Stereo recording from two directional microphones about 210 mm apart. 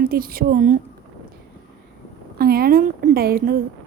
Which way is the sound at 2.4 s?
45° right (ahead or behind).